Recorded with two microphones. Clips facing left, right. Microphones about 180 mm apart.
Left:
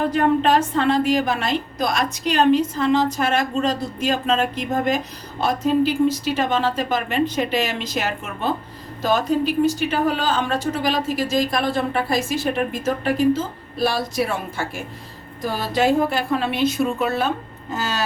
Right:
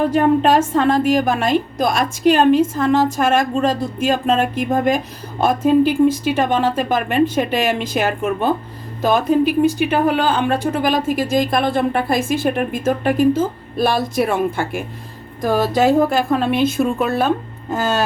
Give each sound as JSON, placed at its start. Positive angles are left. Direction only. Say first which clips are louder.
{"t": 0.1, "sound": "a woman's voice", "louder": "right 3 dB", "side_deg": -45}